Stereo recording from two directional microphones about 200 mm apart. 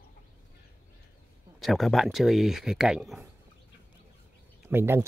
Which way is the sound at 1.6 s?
Centre (ahead or behind).